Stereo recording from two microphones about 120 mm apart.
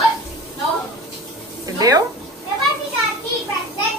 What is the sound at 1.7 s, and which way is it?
Speech, 30° right (ahead or behind).